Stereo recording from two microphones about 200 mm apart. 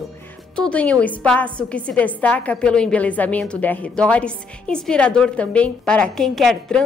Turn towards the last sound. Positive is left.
turn(degrees=5)  # may be behind; listen again after turning